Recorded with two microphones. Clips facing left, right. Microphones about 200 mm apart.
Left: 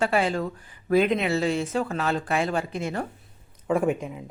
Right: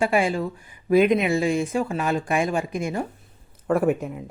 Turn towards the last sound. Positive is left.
turn(degrees=-5)  # may be behind; listen again after turning